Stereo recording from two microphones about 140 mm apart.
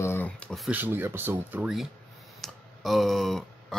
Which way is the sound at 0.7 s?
15° right (ahead or behind).